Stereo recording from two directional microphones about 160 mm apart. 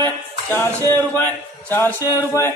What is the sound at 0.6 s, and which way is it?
A man's voice, 15° left (ahead or behind).